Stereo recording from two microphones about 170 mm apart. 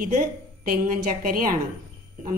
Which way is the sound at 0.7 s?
55° right (ahead or behind).